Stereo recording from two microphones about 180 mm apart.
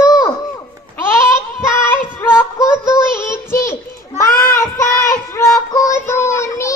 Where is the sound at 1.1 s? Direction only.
15° left (ahead or behind).